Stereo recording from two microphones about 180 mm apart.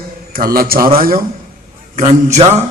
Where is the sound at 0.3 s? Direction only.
55° right (ahead or behind).